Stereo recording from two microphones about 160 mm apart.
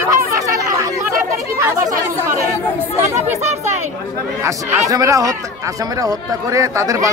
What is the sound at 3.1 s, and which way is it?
Speech, 45° right (ahead or behind).